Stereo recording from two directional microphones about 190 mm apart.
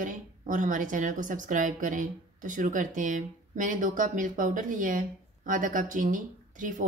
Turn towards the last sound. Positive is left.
turn(degrees=-45)  # may be behind; listen again after turning